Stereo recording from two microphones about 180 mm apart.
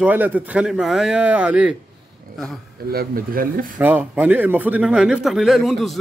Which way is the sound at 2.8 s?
55° right (ahead or behind).